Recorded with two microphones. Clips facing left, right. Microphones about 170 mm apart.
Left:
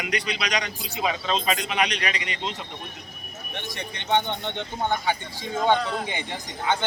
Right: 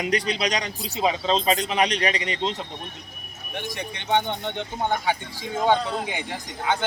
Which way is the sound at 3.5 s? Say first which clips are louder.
Right 3 dB; 10° right (ahead or behind).